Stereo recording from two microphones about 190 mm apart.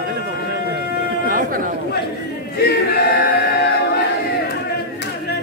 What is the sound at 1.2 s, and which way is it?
Chatter, 50° right (ahead or behind).